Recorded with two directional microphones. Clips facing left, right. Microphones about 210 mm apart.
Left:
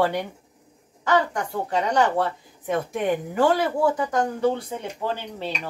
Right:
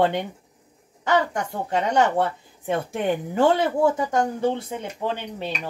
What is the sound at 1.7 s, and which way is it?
Speech, 25° right (ahead or behind).